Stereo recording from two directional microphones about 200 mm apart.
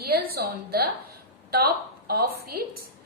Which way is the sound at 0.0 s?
50° right (ahead or behind).